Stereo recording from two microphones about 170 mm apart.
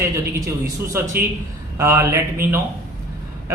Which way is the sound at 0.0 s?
20° right (ahead or behind).